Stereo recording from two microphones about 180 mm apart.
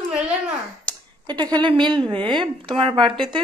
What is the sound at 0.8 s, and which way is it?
Speech, 25° right (ahead or behind).